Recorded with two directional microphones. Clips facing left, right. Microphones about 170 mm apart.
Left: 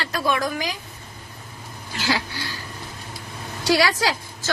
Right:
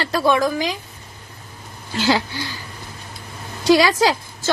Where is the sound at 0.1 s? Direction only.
25° right (ahead or behind).